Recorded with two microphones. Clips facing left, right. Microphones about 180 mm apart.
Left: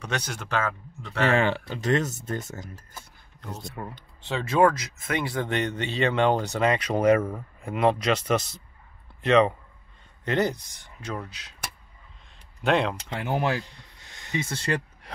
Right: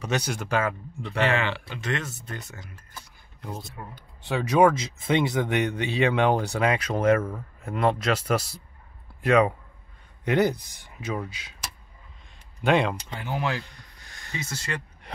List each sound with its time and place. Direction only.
0.0 s speech: 10° right (ahead or behind)
1.2 s speech: 45° left (ahead or behind)
3.3 s speech: 10° right (ahead or behind)
7.2 s speech: 15° left (ahead or behind)
7.6 s speech: centre (ahead or behind)
12.6 s speech: 5° right (ahead or behind)
13.2 s speech: 50° left (ahead or behind)
13.5 s speech: 25° left (ahead or behind)